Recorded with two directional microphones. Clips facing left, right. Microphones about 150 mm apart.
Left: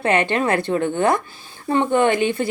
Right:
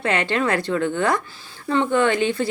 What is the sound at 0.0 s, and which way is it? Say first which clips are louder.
A woman's voice: left 3 dB; 20° left (ahead or behind).